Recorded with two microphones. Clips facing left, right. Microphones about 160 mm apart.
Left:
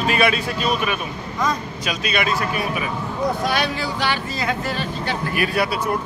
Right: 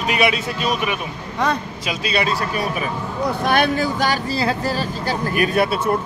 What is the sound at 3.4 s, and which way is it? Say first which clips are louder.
Speech: right 5 dB; 50° right (ahead or behind).